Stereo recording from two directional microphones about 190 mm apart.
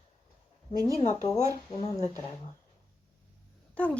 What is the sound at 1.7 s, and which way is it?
Speech, 30° left (ahead or behind).